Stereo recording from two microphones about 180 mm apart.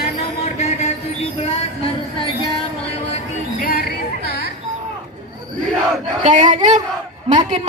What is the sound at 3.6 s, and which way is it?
Music, 55° left (ahead or behind).